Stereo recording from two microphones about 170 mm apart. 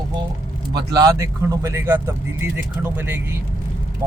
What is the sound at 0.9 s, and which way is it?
Speech, 20° right (ahead or behind).